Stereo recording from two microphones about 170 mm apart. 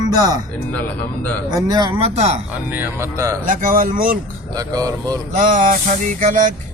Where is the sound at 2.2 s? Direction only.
40° right (ahead or behind).